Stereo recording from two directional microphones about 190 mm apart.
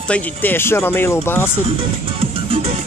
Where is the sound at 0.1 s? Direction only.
10° left (ahead or behind).